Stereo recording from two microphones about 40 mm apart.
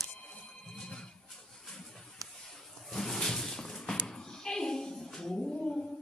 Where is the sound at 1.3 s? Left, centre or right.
Centre.